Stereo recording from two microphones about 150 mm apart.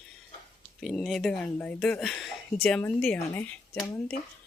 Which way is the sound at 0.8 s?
Centre (ahead or behind).